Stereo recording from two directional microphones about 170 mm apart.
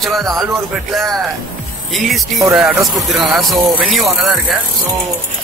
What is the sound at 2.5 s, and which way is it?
Speech, centre (ahead or behind).